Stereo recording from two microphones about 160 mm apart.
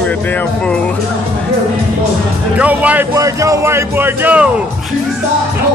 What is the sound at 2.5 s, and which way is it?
Music, 10° right (ahead or behind).